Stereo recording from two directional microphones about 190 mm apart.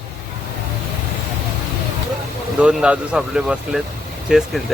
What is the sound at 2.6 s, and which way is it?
Speech, 5° right (ahead or behind).